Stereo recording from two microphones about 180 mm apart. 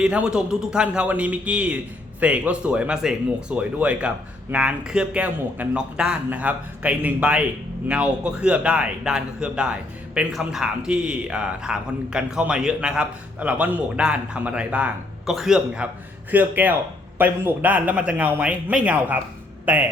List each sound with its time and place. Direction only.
0.0 s a man's voice: 5° right (ahead or behind)